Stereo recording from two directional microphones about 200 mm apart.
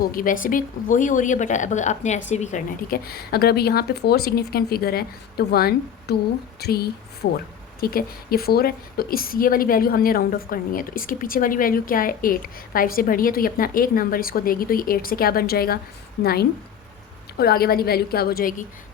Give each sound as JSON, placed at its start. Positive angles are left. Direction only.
{"t": 0.0, "sound": "a woman's voice", "side_deg": 45}